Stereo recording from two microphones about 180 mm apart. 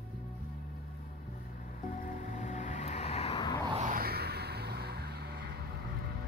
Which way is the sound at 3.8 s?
50° right (ahead or behind).